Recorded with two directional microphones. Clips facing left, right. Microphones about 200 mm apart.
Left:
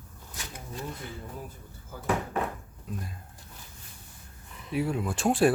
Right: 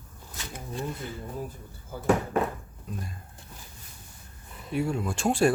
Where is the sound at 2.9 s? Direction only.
Centre (ahead or behind).